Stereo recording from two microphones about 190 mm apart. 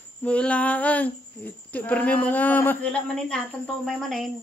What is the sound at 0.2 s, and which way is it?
Speech, 5° left (ahead or behind).